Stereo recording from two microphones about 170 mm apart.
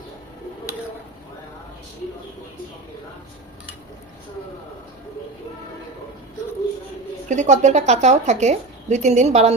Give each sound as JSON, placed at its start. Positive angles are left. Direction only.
{"t": 7.3, "sound": "a woman's voice", "side_deg": -45}